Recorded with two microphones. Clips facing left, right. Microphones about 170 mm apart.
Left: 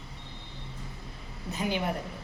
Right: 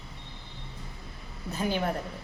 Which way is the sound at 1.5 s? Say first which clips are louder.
Right 1 dB; 15° left (ahead or behind).